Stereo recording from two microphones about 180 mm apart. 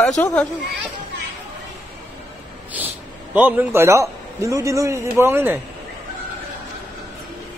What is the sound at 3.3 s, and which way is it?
A man's voice, 10° right (ahead or behind).